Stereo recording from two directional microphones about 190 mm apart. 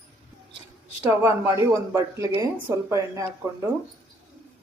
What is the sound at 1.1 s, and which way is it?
Speech, 15° right (ahead or behind).